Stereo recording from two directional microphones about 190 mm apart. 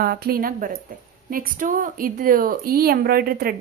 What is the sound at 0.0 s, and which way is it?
A woman's voice, 50° right (ahead or behind).